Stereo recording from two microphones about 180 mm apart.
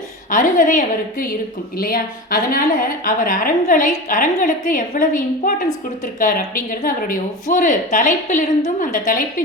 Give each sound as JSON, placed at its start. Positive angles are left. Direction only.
{"t": 0.3, "sound": "a woman's voice", "side_deg": 45}